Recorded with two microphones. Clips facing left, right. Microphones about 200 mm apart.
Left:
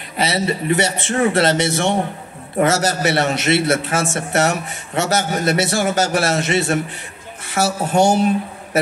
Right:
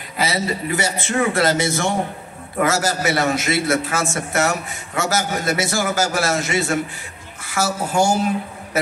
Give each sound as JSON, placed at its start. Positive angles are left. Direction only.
{"t": 0.2, "sound": "a man's voice", "side_deg": 25}